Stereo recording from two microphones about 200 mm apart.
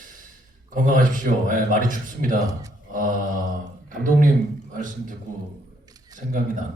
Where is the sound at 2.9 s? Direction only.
40° right (ahead or behind).